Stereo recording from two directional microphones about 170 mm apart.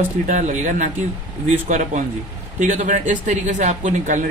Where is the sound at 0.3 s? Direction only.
45° right (ahead or behind).